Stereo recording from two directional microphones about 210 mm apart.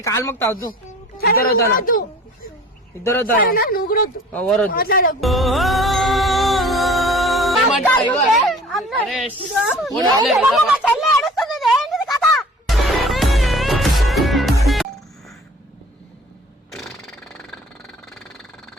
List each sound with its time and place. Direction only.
0.0 s speech: 10° left (ahead or behind)
1.2 s a woman's voice: 45° left (ahead or behind)
3.0 s speech: 15° left (ahead or behind)
3.4 s a woman's voice: 45° left (ahead or behind)
4.3 s speech: 5° left (ahead or behind)
4.7 s a woman's voice: 45° left (ahead or behind)
5.2 s music: centre (ahead or behind)
8.1 s speech: centre (ahead or behind)
10.2 s a sound: centre (ahead or behind)
12.2 s music: centre (ahead or behind)
16.7 s a sound: centre (ahead or behind)